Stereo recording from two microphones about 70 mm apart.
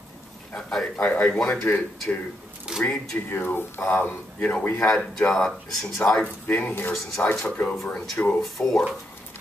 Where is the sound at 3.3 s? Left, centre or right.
Left.